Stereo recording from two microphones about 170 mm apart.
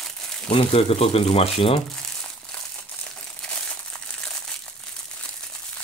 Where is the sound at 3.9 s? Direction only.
5° left (ahead or behind).